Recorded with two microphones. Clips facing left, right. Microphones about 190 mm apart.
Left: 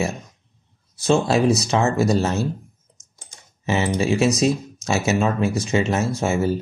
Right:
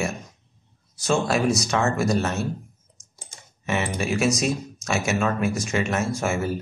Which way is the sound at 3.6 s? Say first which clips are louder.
Left 5 dB; 30° left (ahead or behind).